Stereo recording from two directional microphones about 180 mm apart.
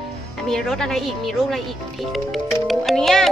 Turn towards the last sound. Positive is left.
turn(degrees=0)  # may be behind; listen again after turning